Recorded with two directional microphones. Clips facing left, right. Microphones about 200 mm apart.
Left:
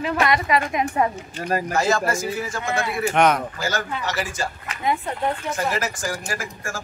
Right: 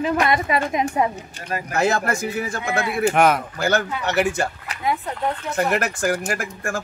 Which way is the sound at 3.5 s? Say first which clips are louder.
Right 5 dB; 60° right (ahead or behind).